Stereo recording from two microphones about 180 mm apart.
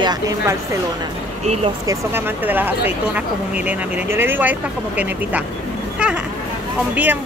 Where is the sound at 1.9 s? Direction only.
10° right (ahead or behind).